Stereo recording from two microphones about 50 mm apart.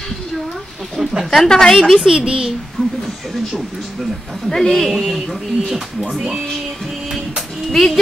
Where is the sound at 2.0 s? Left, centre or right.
Centre.